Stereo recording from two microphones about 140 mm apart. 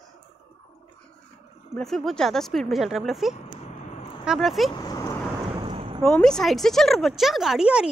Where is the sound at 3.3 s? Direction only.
50° left (ahead or behind).